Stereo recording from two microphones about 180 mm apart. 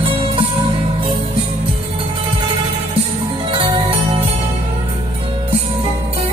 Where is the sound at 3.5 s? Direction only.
30° right (ahead or behind).